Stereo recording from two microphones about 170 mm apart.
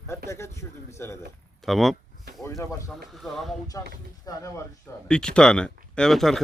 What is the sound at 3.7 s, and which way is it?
Speech, 20° left (ahead or behind).